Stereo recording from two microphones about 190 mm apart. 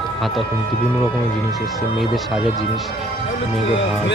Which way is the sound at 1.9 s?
Centre (ahead or behind).